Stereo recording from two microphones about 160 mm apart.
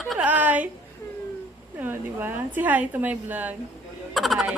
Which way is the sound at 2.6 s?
10° right (ahead or behind).